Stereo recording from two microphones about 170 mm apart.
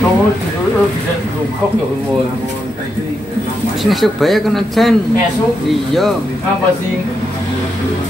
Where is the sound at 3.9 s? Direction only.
Centre (ahead or behind).